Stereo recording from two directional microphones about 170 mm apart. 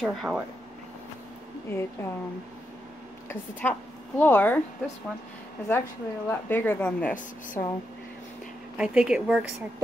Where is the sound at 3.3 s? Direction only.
10° left (ahead or behind).